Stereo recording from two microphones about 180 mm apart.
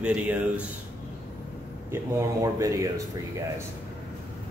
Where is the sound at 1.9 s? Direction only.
15° right (ahead or behind).